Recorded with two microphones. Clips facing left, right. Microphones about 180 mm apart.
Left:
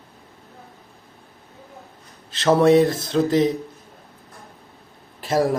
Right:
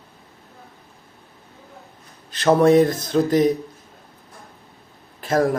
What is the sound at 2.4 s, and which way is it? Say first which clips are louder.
Speech: right 1 dB; 5° right (ahead or behind).